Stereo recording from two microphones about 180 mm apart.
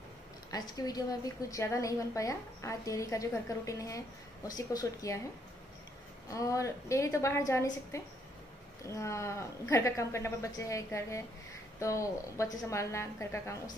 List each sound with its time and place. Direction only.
0.5 s a woman's voice: 20° left (ahead or behind)
6.2 s speech: 20° left (ahead or behind)